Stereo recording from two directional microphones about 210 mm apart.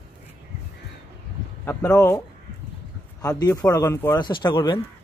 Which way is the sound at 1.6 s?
10° left (ahead or behind).